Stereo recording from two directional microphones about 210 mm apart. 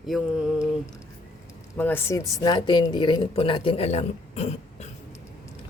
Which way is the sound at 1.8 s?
10° left (ahead or behind).